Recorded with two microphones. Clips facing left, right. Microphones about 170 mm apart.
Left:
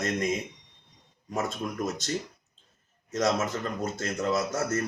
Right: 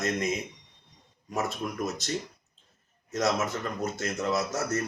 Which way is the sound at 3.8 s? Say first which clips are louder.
Even; 30° left (ahead or behind).